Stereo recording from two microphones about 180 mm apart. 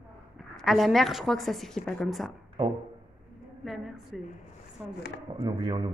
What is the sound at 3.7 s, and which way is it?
A woman's voice, centre (ahead or behind).